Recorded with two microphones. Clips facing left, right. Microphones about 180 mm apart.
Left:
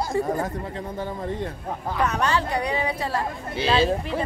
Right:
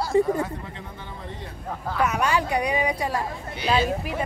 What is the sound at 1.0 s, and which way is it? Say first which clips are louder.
Speech: left 12 dB; 40° left (ahead or behind).